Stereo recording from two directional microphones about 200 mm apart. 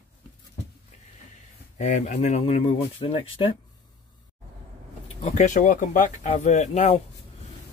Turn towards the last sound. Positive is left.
turn(degrees=35)  # may be behind; listen again after turning